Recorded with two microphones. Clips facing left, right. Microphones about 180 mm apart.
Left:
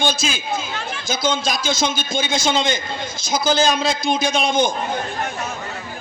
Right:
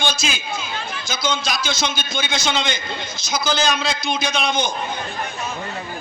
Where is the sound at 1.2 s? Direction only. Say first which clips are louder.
Left 2 dB; 50° left (ahead or behind).